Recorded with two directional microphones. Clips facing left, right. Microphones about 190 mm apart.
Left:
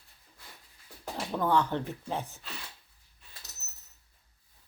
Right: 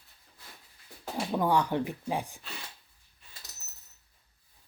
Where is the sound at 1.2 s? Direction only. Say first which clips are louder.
Right 1 dB; 15° right (ahead or behind).